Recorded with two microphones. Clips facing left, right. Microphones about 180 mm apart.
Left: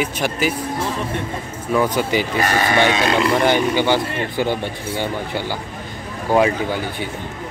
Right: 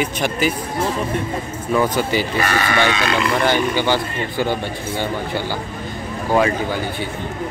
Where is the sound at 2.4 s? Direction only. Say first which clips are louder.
Left 3 dB; 40° left (ahead or behind).